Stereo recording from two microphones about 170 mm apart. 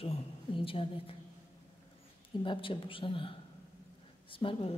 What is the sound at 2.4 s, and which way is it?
Speech, 30° left (ahead or behind).